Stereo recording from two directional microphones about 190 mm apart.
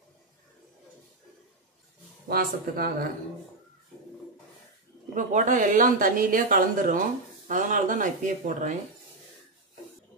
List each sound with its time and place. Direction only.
2.2 s speech: 55° right (ahead or behind)
5.1 s speech: 40° right (ahead or behind)